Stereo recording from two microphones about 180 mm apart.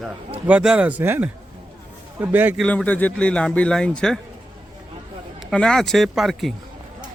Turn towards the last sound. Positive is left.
turn(degrees=0)  # may be behind; listen again after turning